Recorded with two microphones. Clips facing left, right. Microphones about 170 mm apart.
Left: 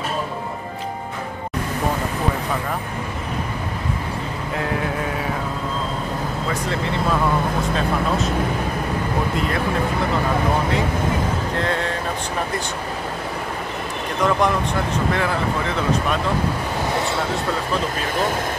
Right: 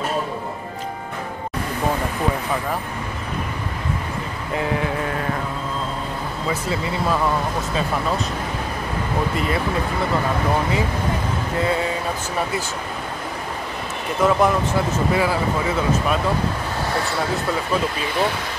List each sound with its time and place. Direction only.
4.6 s speech: centre (ahead or behind)
11.5 s speech: 5° right (ahead or behind)
14.2 s speech: 5° right (ahead or behind)
18.0 s speech: 45° left (ahead or behind)